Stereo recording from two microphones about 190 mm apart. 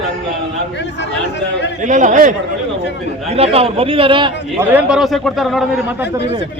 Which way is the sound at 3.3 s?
30° right (ahead or behind).